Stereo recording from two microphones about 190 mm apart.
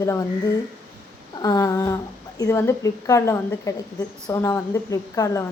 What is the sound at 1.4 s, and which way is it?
A woman's voice, 20° left (ahead or behind).